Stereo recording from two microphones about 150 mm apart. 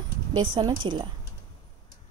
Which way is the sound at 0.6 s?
30° right (ahead or behind).